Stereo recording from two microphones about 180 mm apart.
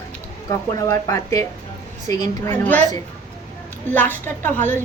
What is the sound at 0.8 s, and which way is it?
A woman's voice, 20° left (ahead or behind).